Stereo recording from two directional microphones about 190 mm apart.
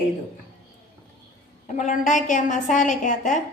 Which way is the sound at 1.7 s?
40° left (ahead or behind).